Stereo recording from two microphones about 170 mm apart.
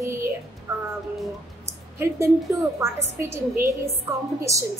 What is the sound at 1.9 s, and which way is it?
A man's voice, 15° right (ahead or behind).